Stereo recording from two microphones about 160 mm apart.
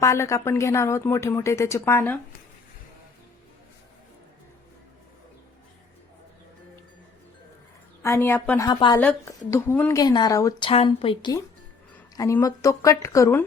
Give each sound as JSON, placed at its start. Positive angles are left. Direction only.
{"t": 0.0, "sound": "a woman's voice", "side_deg": 20}
{"t": 8.0, "sound": "a woman's voice", "side_deg": 15}
{"t": 8.6, "sound": "a woman's voice", "side_deg": 25}
{"t": 9.0, "sound": "a woman's voice", "side_deg": 10}
{"t": 10.0, "sound": "a woman's voice", "side_deg": 25}
{"t": 10.7, "sound": "speech", "side_deg": 35}
{"t": 12.1, "sound": "a woman's voice", "side_deg": 20}